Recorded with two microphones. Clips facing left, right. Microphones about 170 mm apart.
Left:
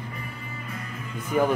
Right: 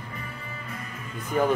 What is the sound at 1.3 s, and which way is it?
Speech, 10° left (ahead or behind).